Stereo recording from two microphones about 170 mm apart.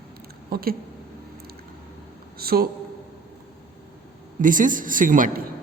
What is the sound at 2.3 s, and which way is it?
Speech, 65° right (ahead or behind).